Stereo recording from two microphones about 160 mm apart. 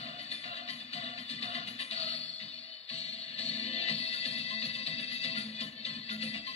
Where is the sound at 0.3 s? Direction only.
40° left (ahead or behind).